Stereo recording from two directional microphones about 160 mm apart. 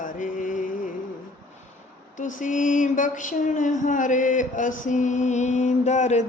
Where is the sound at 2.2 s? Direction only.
55° left (ahead or behind).